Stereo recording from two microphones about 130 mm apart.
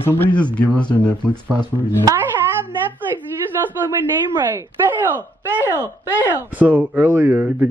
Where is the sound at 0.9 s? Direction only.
10° left (ahead or behind).